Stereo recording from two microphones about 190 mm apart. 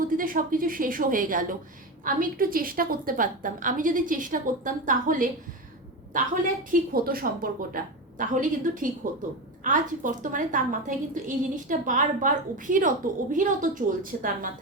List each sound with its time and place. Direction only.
0.2 s a woman's voice: 45° right (ahead or behind)